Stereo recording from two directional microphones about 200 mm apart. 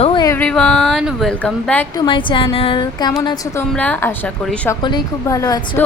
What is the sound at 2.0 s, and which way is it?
A woman's voice, 25° left (ahead or behind).